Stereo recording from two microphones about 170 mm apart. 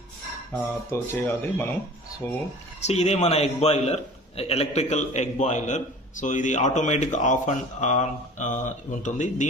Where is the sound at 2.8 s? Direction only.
40° left (ahead or behind).